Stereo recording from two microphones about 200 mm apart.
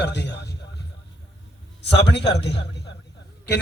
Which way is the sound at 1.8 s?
55° left (ahead or behind).